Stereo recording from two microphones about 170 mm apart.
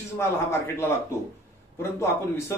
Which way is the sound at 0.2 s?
15° left (ahead or behind).